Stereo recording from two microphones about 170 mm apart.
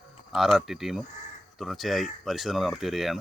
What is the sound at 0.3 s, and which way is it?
Speech, 5° right (ahead or behind).